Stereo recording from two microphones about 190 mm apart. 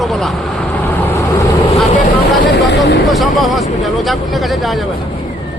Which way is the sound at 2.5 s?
70° left (ahead or behind).